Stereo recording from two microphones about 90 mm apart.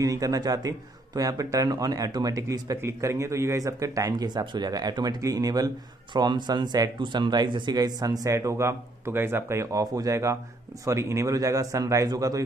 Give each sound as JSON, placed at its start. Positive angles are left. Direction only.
{"t": 0.0, "sound": "a man's voice", "side_deg": -40}